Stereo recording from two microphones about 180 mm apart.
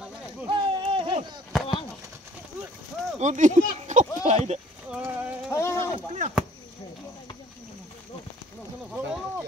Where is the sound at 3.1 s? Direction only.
45° right (ahead or behind).